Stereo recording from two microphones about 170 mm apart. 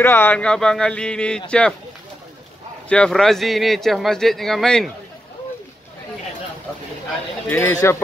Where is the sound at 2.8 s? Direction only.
5° left (ahead or behind).